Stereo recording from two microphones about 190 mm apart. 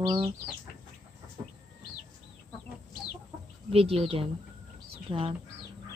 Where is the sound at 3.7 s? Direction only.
30° right (ahead or behind).